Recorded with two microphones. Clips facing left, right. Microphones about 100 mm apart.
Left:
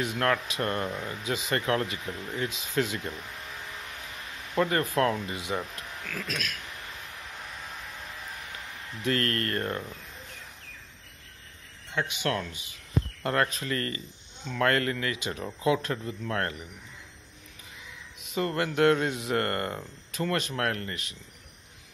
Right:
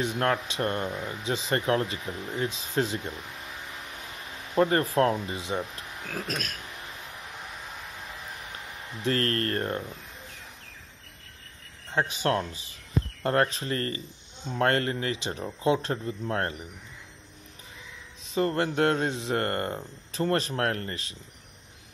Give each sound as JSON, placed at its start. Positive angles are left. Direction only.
{"t": 0.0, "sound": "a man's voice", "side_deg": -30}
{"t": 4.6, "sound": "a man's voice", "side_deg": -30}
{"t": 6.0, "sound": "speech", "side_deg": -40}
{"t": 9.0, "sound": "speech", "side_deg": -30}
{"t": 11.9, "sound": "speech", "side_deg": -35}
{"t": 18.2, "sound": "a man's voice", "side_deg": -30}